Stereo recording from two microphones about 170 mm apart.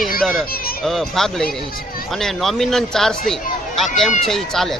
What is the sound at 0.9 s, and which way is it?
Speech, centre (ahead or behind).